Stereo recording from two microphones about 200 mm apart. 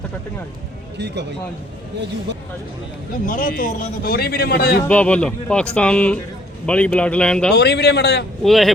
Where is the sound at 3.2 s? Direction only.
40° left (ahead or behind).